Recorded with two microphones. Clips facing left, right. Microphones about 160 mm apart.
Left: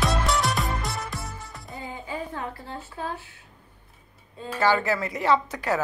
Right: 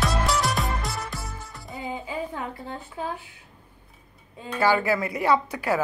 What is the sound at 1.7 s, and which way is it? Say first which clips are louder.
Music: right 2 dB; 20° right (ahead or behind).